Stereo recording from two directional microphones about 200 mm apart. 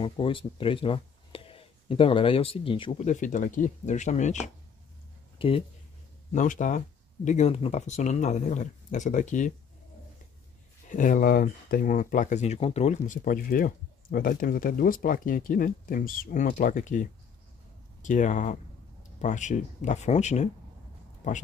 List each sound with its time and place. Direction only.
0.0 s speech: 25° left (ahead or behind)
5.4 s speech: 25° left (ahead or behind)
6.3 s speech: 40° left (ahead or behind)
10.9 s speech: 40° left (ahead or behind)